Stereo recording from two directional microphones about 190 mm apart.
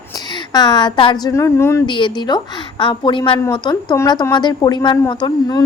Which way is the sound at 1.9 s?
25° left (ahead or behind).